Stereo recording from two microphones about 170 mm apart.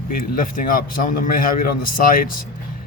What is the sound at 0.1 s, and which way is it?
Speech, 55° left (ahead or behind).